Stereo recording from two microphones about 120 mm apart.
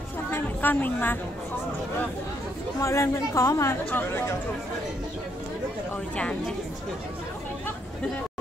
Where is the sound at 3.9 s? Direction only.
15° left (ahead or behind).